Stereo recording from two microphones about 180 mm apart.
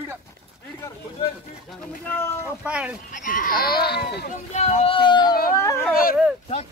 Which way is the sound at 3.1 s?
45° left (ahead or behind).